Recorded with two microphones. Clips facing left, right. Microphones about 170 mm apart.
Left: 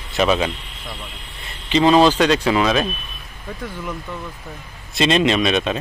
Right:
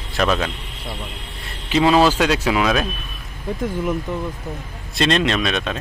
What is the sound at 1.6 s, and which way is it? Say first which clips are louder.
A man's voice: left 1 dB; 5° right (ahead or behind).